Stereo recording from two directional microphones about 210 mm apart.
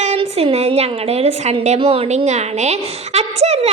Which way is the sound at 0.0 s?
30° right (ahead or behind).